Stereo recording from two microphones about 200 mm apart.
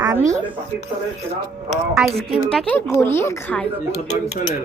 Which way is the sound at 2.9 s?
15° left (ahead or behind).